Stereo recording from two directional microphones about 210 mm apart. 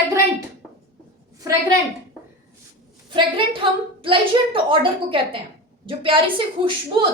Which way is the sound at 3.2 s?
25° right (ahead or behind).